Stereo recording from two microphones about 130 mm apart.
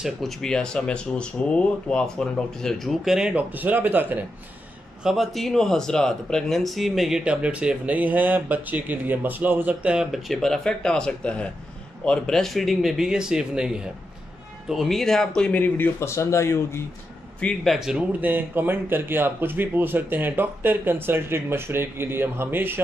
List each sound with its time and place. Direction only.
0.0 s speech: centre (ahead or behind)
5.0 s speech: centre (ahead or behind); by 16.8 s 20° left (ahead or behind)
17.4 s speech: 5° left (ahead or behind); by 22.8 s 15° right (ahead or behind)